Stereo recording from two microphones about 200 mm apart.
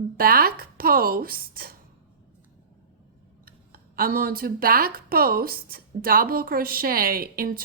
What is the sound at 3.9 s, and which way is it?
Speech, 45° right (ahead or behind).